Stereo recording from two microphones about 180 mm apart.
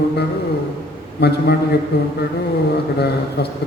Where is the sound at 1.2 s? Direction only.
65° left (ahead or behind).